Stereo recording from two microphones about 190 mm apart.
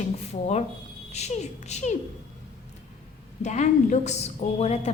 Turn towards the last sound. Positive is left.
turn(degrees=35)  # may be behind; listen again after turning